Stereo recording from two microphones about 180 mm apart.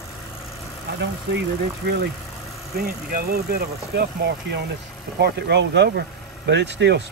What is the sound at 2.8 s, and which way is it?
Speech, 55° right (ahead or behind).